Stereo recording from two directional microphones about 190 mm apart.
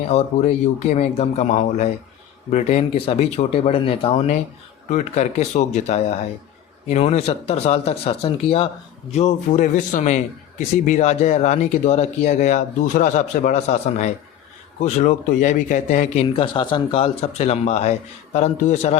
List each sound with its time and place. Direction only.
0.1 s speech: 35° left (ahead or behind)